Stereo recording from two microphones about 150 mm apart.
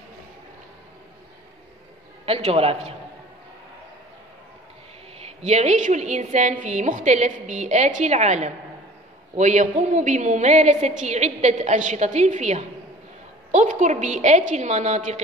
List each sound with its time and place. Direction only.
2.2 s a man's voice: 40° right (ahead or behind)
5.2 s a woman's voice: 45° right (ahead or behind)